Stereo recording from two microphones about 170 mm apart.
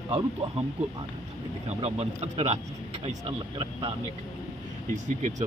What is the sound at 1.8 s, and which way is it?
Speech, 35° right (ahead or behind).